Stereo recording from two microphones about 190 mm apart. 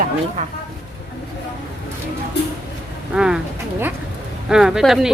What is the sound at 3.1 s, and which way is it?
Speech, 5° right (ahead or behind).